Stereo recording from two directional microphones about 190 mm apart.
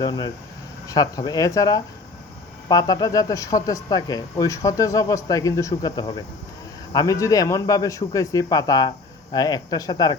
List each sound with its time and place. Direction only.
0.0 s speech: 20° left (ahead or behind)